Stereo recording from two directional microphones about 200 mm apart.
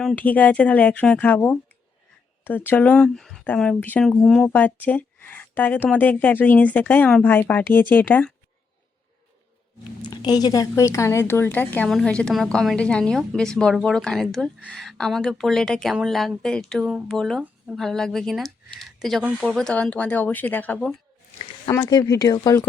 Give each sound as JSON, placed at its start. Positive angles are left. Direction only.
{"t": 0.0, "sound": "speech", "side_deg": 5}
{"t": 10.0, "sound": "speech", "side_deg": 20}